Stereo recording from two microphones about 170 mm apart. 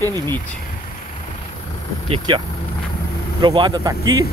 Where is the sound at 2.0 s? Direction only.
30° right (ahead or behind).